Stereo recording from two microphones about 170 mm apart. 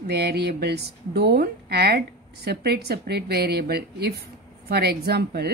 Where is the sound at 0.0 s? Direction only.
65° right (ahead or behind).